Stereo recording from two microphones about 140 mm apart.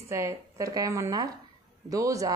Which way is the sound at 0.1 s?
20° right (ahead or behind).